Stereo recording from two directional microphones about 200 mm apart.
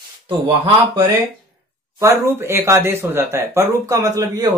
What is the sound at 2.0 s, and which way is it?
Speech, 15° right (ahead or behind).